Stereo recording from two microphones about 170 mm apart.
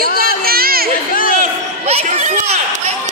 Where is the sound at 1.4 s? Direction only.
40° right (ahead or behind).